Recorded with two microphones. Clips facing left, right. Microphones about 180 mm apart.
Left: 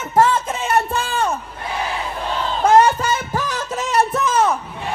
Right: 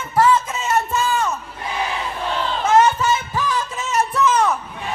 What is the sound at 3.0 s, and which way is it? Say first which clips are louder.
Music: right 1 dB; 45° left (ahead or behind).